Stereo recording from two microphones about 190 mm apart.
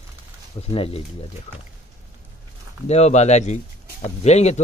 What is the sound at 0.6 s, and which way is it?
Speech, 30° left (ahead or behind).